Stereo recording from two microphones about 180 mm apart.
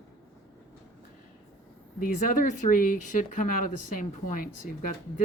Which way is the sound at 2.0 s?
50° left (ahead or behind).